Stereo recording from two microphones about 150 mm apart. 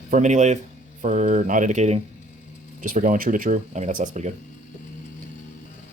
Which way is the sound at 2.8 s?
60° right (ahead or behind).